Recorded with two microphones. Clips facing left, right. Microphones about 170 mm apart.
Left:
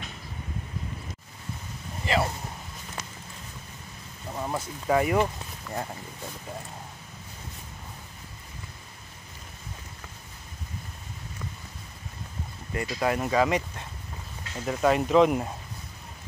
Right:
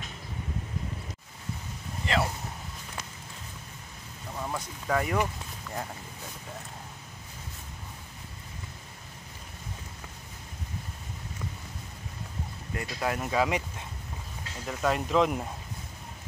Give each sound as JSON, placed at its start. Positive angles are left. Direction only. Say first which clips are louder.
{"t": 2.0, "sound": "speech", "louder": "left 2 dB", "side_deg": 5}
{"t": 4.4, "sound": "speech", "louder": "left 3 dB", "side_deg": 15}
{"t": 12.7, "sound": "speech", "louder": "left 4 dB", "side_deg": 0}
{"t": 14.7, "sound": "speech", "louder": "left 5 dB", "side_deg": 5}